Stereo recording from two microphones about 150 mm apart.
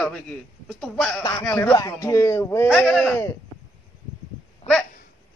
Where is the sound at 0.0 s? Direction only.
5° left (ahead or behind).